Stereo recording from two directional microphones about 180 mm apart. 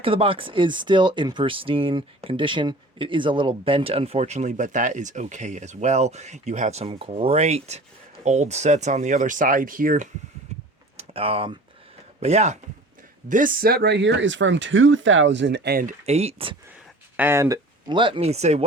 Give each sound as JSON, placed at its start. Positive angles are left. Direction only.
{"t": 0.0, "sound": "speech", "side_deg": -30}
{"t": 10.9, "sound": "a sound", "side_deg": -30}
{"t": 12.2, "sound": "speech", "side_deg": -40}
{"t": 16.0, "sound": "speech", "side_deg": -35}
{"t": 17.2, "sound": "speech", "side_deg": -15}